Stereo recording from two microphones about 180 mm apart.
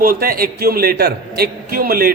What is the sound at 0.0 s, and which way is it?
A man's voice, 55° right (ahead or behind).